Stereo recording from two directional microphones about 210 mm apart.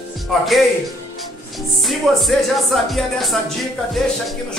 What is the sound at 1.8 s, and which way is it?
Speech, centre (ahead or behind).